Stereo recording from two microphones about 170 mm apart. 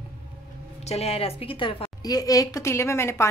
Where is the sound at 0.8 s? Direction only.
35° left (ahead or behind); by 3.3 s 15° left (ahead or behind).